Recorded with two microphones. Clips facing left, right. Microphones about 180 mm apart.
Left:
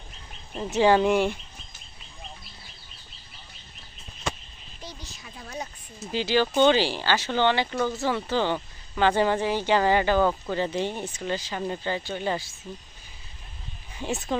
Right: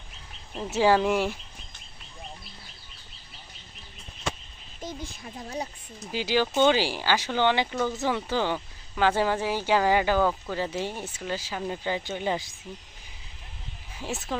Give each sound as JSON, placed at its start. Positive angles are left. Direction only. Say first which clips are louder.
{"t": 0.7, "sound": "speech", "louder": "left 2 dB", "side_deg": -5}
{"t": 4.8, "sound": "speech", "louder": "right 6 dB", "side_deg": -50}
{"t": 6.1, "sound": "speech", "louder": "left 2 dB", "side_deg": -10}
{"t": 13.9, "sound": "speech", "louder": "left 4 dB", "side_deg": -5}